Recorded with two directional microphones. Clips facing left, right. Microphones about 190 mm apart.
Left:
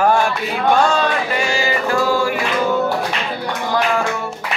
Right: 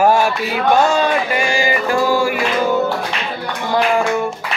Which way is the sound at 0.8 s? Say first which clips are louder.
Right 3 dB; 10° right (ahead or behind).